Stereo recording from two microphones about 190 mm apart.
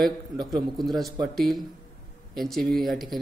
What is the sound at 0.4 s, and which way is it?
Speech, 20° right (ahead or behind).